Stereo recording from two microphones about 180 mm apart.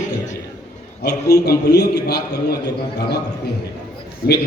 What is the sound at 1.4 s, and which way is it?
Speech, 65° left (ahead or behind).